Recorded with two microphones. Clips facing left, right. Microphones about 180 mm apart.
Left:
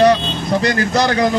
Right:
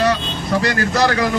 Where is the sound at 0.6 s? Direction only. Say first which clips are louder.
Left 1 dB; 20° left (ahead or behind).